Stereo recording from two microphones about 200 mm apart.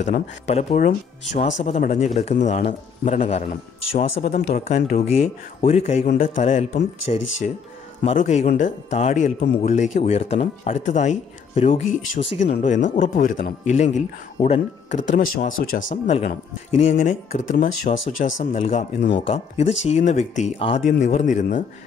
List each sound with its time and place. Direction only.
0.0 s speech: 35° left (ahead or behind)
12.1 s speech: 65° left (ahead or behind)
12.6 s speech: 40° left (ahead or behind)